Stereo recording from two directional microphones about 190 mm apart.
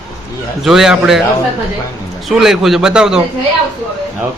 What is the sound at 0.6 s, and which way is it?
Speech, centre (ahead or behind).